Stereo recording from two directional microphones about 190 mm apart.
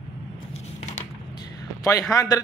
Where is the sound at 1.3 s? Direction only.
20° left (ahead or behind).